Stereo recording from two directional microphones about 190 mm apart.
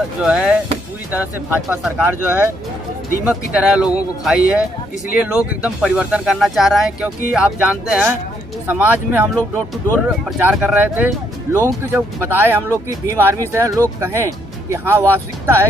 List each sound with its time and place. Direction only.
0.2 s speech: 5° right (ahead or behind)
10.4 s speech: 5° right (ahead or behind)